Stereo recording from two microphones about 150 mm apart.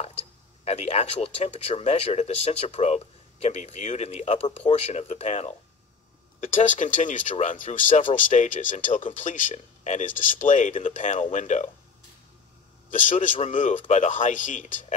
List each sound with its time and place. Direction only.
0.7 s speech: 45° left (ahead or behind)
6.7 s speech: 55° left (ahead or behind)
12.9 s speech: 60° left (ahead or behind)